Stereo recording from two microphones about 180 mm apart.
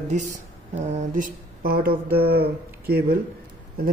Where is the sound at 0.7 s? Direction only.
40° right (ahead or behind); by 3.2 s 60° right (ahead or behind).